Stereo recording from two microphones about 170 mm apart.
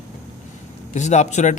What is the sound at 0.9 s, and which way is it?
Speech, 45° left (ahead or behind).